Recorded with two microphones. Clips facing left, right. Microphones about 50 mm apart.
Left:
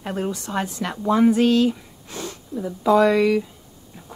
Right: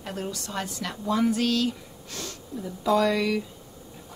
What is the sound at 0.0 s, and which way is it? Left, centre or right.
Speech, left.